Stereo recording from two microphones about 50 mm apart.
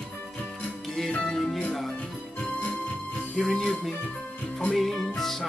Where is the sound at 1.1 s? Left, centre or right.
Left.